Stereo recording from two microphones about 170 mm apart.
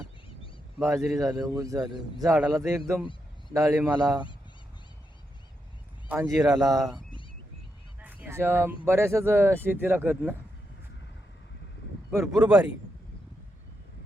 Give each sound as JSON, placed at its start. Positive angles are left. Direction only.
{"t": 0.8, "sound": "a man's voice", "side_deg": 0}
{"t": 1.3, "sound": "speech", "side_deg": -20}
{"t": 6.1, "sound": "speech", "side_deg": -20}
{"t": 8.0, "sound": "fowl", "side_deg": -10}
{"t": 8.9, "sound": "speech", "side_deg": -15}
{"t": 12.3, "sound": "a man's voice", "side_deg": -5}